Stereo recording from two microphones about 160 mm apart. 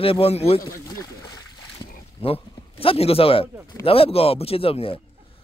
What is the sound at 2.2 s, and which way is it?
Speech, 35° left (ahead or behind).